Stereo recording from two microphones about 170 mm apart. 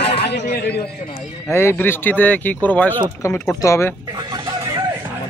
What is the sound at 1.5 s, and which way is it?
Speech, 15° left (ahead or behind).